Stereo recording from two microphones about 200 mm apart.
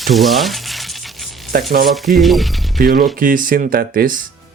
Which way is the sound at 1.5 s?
50° right (ahead or behind).